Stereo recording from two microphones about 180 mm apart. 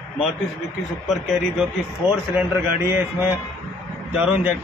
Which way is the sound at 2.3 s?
10° right (ahead or behind).